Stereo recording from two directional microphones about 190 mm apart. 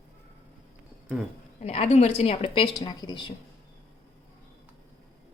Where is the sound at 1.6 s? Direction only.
35° left (ahead or behind).